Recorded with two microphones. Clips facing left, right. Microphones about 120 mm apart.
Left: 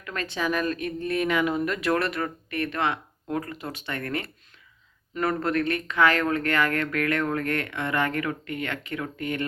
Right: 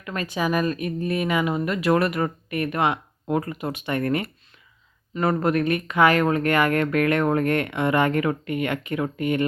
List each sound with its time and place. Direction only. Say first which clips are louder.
0.0 s speech: right 3 dB; 10° right (ahead or behind)
5.4 s speech: right 4 dB; 15° right (ahead or behind)